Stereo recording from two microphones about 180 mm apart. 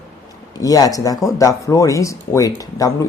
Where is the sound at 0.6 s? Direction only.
20° left (ahead or behind).